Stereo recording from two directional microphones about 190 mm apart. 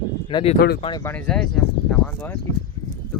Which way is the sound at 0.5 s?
55° left (ahead or behind).